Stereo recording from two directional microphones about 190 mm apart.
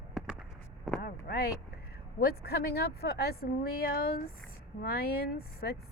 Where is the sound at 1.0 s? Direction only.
55° left (ahead or behind).